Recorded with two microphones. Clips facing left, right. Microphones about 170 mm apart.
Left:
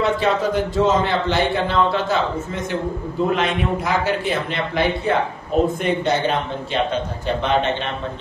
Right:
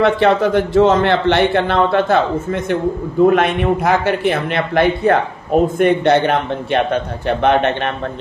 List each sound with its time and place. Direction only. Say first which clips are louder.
0.0 s a man's voice: right 6 dB; 60° right (ahead or behind)